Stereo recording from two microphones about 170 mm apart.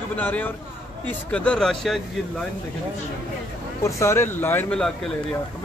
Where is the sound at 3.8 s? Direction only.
15° left (ahead or behind).